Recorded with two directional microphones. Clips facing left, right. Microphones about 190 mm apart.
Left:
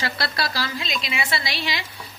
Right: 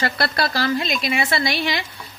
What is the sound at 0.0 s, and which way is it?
Speech, 55° right (ahead or behind).